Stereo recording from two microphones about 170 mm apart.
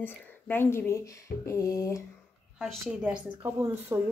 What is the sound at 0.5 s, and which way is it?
Speech, 15° left (ahead or behind).